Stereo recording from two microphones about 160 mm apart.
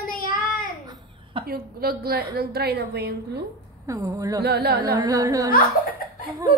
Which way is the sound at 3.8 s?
20° right (ahead or behind).